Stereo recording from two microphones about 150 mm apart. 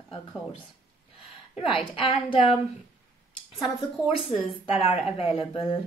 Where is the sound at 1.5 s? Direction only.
40° left (ahead or behind).